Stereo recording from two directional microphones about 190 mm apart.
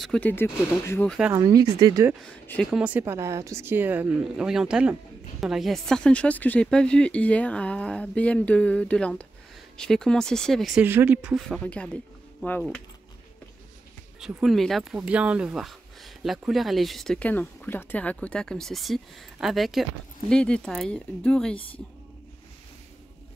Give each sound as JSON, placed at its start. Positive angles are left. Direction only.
{"t": 0.0, "sound": "speech", "side_deg": 5}
{"t": 1.3, "sound": "speech", "side_deg": -20}
{"t": 2.4, "sound": "speech", "side_deg": 10}
{"t": 2.7, "sound": "a woman's voice", "side_deg": -5}
{"t": 14.2, "sound": "speech", "side_deg": 0}